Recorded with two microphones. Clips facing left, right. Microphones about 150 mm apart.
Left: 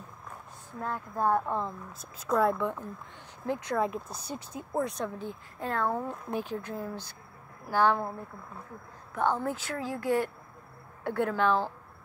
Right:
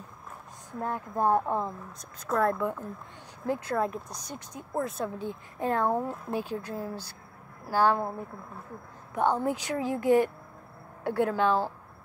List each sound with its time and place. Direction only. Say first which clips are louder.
0.7 s speech: right 3 dB; 15° right (ahead or behind)
1.9 s speech: left 2 dB; centre (ahead or behind)
5.2 s speech: right 5 dB; 15° right (ahead or behind)
9.1 s speech: right 2 dB; 15° right (ahead or behind)